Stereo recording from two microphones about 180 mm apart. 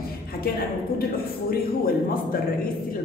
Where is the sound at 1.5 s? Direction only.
55° left (ahead or behind).